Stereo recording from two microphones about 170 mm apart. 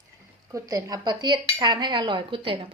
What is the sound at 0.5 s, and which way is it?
Cutlery, 20° right (ahead or behind).